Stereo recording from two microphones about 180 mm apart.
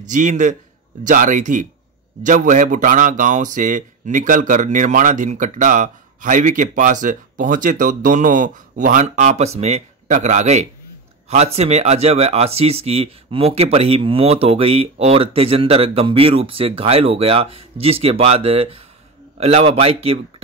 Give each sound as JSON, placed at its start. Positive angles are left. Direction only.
{"t": 0.1, "sound": "a man's voice", "side_deg": -45}